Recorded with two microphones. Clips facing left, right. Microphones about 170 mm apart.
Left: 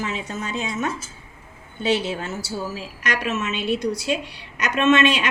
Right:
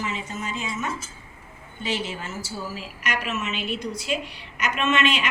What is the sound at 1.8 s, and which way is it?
Speech, 70° left (ahead or behind).